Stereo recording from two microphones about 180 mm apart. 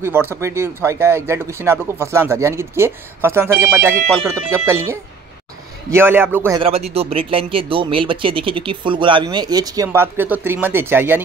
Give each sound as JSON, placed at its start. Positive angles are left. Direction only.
{"t": 0.0, "sound": "speech", "side_deg": -10}
{"t": 6.6, "sound": "speech", "side_deg": -35}